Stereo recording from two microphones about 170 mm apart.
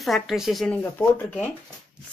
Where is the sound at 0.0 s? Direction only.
Centre (ahead or behind).